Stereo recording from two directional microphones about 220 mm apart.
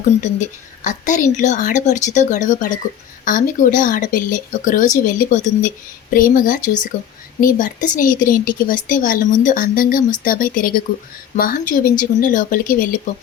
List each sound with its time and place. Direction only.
0.9 s speech: 35° left (ahead or behind)